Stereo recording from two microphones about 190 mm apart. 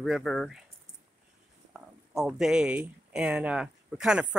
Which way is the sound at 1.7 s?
Centre (ahead or behind).